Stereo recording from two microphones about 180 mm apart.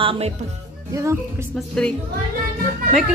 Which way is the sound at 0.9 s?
20° right (ahead or behind).